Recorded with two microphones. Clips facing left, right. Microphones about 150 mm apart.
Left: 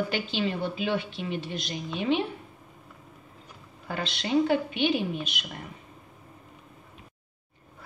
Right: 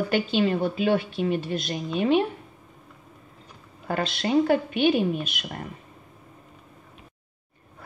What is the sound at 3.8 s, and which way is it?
A woman's voice, 50° right (ahead or behind).